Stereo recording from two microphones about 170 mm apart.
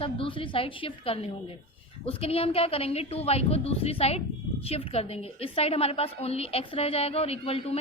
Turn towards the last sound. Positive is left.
turn(degrees=35)  # may be behind; listen again after turning